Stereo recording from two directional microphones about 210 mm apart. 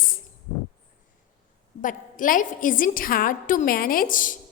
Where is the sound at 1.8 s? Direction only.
40° left (ahead or behind).